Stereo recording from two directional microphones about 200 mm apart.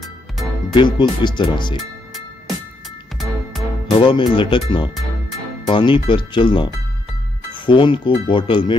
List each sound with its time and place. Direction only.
0.7 s speech: 20° left (ahead or behind)
3.2 s music: centre (ahead or behind)
3.9 s speech: 25° left (ahead or behind)